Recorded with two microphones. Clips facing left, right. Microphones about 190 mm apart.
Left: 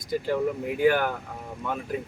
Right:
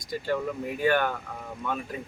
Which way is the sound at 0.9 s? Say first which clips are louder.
Even; 5° left (ahead or behind).